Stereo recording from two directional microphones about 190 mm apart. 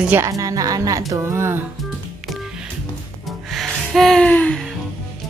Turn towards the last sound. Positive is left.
turn(degrees=5)  # may be behind; listen again after turning